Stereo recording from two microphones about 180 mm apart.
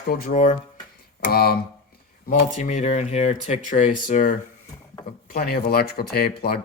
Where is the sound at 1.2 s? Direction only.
55° left (ahead or behind).